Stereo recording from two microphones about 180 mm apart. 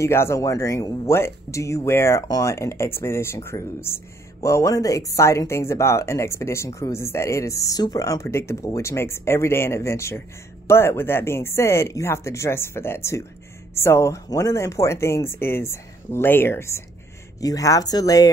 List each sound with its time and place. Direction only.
0.0 s speech: 15° left (ahead or behind)